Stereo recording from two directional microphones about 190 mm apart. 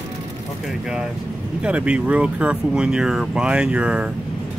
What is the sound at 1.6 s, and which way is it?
Speech, 5° right (ahead or behind).